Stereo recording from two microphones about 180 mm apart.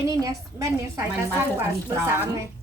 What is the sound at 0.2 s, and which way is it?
A woman's voice, 20° right (ahead or behind).